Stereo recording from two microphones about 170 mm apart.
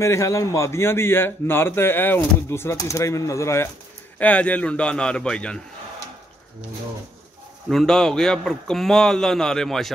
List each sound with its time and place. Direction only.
0.0 s a man's voice: 15° left (ahead or behind)
7.7 s a man's voice: centre (ahead or behind)